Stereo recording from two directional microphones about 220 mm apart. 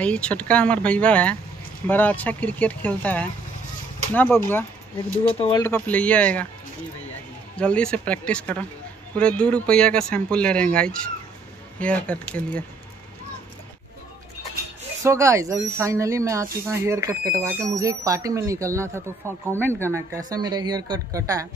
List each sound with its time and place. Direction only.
0.0 s speech: 5° left (ahead or behind)
7.5 s speech: 5° left (ahead or behind)
15.0 s speech: 15° right (ahead or behind)